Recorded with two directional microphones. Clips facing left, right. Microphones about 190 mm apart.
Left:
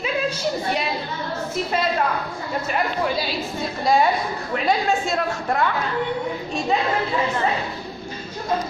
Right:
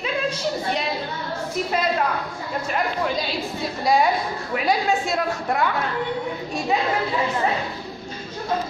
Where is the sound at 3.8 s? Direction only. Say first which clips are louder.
Left 1 dB; centre (ahead or behind).